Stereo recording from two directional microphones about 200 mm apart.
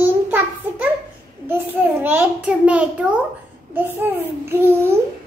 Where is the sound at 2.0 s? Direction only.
10° right (ahead or behind).